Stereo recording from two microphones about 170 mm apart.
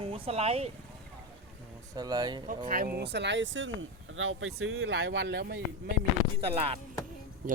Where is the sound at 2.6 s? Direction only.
60° right (ahead or behind); by 3.7 s 90° right.